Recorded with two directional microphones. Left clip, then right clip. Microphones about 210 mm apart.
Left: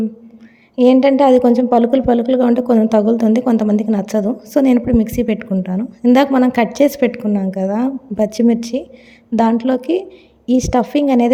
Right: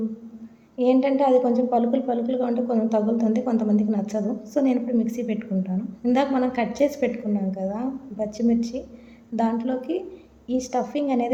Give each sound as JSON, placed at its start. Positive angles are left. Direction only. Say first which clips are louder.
{"t": 0.8, "sound": "a woman's voice", "louder": "left 9 dB", "side_deg": 45}